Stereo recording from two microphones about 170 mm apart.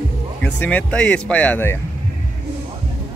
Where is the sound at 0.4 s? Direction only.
10° left (ahead or behind).